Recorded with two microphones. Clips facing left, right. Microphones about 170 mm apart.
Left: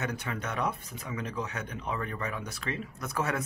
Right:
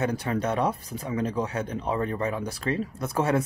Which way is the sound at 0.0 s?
35° right (ahead or behind).